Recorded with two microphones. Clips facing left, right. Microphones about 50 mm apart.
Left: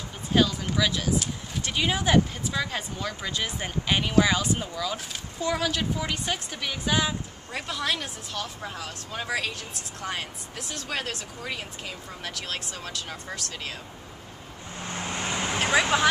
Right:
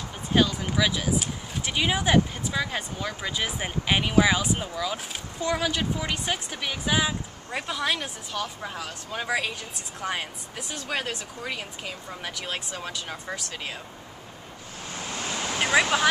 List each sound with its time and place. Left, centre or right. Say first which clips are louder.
0.3 s speech: even; centre
15.0 s vehicle: left 2 dB; left
15.6 s speech: right 1 dB; centre